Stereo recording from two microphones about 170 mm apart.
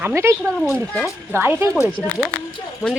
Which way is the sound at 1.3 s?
10° right (ahead or behind).